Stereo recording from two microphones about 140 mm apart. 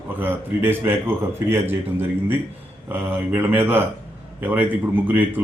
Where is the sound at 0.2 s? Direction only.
15° right (ahead or behind).